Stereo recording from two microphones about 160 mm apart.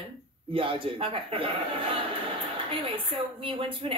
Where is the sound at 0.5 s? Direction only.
35° right (ahead or behind).